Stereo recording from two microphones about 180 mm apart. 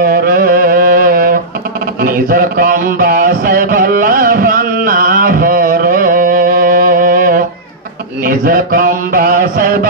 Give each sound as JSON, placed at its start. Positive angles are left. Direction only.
{"t": 0.1, "sound": "music", "side_deg": -55}
{"t": 2.0, "sound": "mantra", "side_deg": -55}